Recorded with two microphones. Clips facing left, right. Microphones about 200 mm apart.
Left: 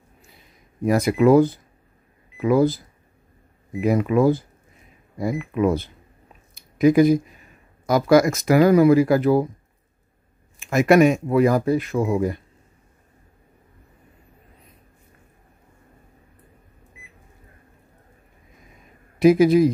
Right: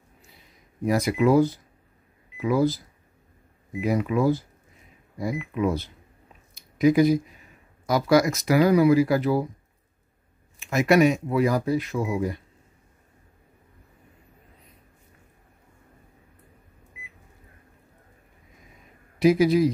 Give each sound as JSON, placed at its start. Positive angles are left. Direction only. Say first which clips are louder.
{"t": 0.8, "sound": "speech", "louder": "left 5 dB", "side_deg": 55}
{"t": 3.8, "sound": "speech", "louder": "left 5 dB", "side_deg": 55}
{"t": 6.5, "sound": "a sound", "louder": "left 3 dB", "side_deg": 50}
{"t": 7.8, "sound": "speech", "louder": "left 4 dB", "side_deg": 50}
{"t": 10.6, "sound": "speech", "louder": "left 4 dB", "side_deg": 50}
{"t": 19.1, "sound": "a man's voice", "louder": "left 4 dB", "side_deg": 50}